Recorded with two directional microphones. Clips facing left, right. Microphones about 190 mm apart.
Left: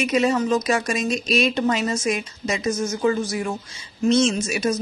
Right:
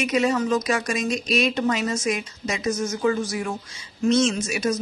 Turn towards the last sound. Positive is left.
turn(degrees=25)  # may be behind; listen again after turning